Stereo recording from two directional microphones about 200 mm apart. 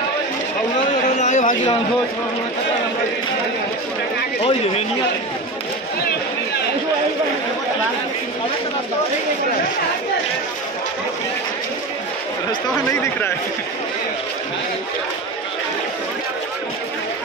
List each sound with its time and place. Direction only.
1.1 s music: 35° left (ahead or behind)
4.4 s speech: 30° left (ahead or behind)